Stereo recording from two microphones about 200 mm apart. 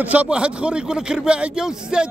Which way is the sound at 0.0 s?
10° right (ahead or behind).